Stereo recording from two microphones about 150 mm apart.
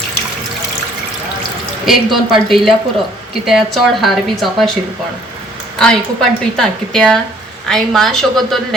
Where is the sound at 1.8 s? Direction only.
Centre (ahead or behind).